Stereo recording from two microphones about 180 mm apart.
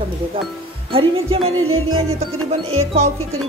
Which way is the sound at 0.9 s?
30° right (ahead or behind).